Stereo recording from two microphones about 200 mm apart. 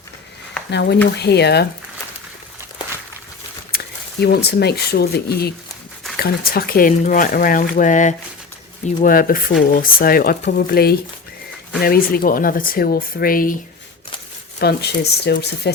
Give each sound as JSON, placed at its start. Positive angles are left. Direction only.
{"t": 0.7, "sound": "speech", "side_deg": 60}
{"t": 3.7, "sound": "a sound", "side_deg": 50}
{"t": 4.2, "sound": "speech", "side_deg": 55}
{"t": 14.6, "sound": "speech", "side_deg": 55}